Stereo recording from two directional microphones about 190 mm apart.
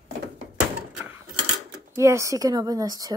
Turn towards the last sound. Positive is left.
turn(degrees=-20)  # may be behind; listen again after turning